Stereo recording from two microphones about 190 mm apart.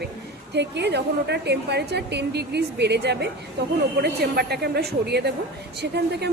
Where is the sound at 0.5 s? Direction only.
65° right (ahead or behind).